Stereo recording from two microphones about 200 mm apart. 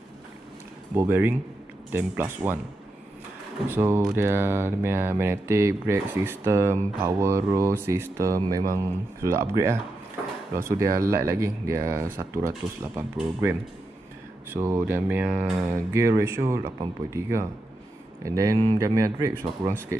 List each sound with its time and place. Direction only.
0.9 s speech: 10° right (ahead or behind)
3.6 s speech: 10° right (ahead or behind)